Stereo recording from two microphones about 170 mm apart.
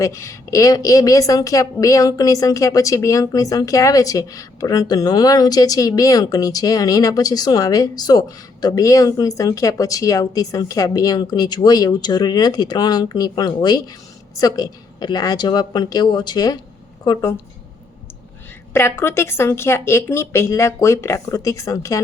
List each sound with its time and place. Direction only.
0.0 s a woman's voice: 15° left (ahead or behind)
18.7 s speech: 15° left (ahead or behind)